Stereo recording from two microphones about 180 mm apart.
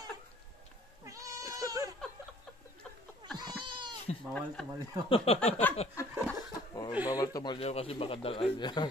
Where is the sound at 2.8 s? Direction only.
5° left (ahead or behind).